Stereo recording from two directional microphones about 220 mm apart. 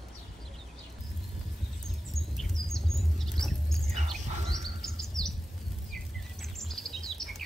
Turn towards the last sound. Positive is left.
turn(degrees=0)  # may be behind; listen again after turning